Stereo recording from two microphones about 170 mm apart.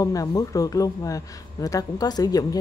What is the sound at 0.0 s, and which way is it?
Speech, 20° left (ahead or behind).